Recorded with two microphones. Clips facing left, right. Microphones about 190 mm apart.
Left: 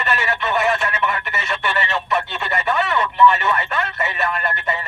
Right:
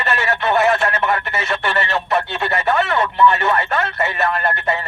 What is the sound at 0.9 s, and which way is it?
Speech, 40° right (ahead or behind).